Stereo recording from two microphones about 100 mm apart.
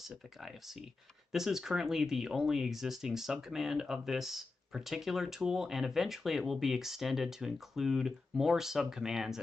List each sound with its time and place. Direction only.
0.0 s speech: centre (ahead or behind)